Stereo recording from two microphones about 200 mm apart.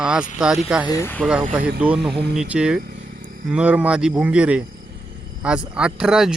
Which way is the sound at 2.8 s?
55° right (ahead or behind).